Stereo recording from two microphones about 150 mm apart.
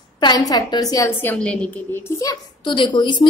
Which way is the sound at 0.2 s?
25° left (ahead or behind).